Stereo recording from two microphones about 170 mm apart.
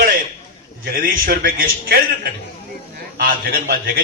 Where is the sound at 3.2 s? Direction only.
55° right (ahead or behind).